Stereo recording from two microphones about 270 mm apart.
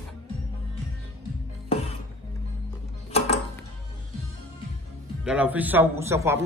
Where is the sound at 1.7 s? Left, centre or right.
Left.